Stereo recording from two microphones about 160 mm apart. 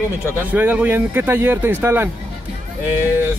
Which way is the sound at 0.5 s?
10° right (ahead or behind).